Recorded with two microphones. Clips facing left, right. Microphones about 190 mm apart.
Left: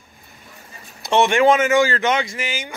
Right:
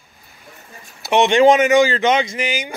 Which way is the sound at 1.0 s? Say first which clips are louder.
Right 3 dB; 15° right (ahead or behind).